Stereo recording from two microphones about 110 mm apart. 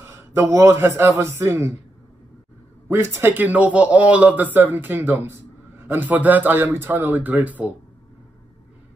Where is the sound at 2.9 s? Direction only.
25° right (ahead or behind).